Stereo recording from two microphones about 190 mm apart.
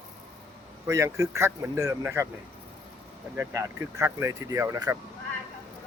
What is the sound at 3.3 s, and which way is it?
Speech, 15° right (ahead or behind).